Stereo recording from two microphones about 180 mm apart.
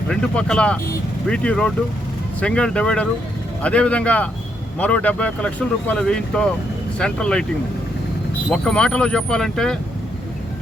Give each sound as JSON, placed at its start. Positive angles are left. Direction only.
{"t": 0.1, "sound": "speech", "side_deg": 5}
{"t": 8.4, "sound": "speech", "side_deg": 5}